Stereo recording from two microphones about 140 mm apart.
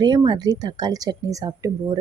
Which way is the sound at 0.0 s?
35° right (ahead or behind).